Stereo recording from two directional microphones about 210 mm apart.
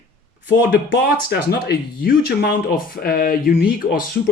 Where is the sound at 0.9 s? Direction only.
50° left (ahead or behind).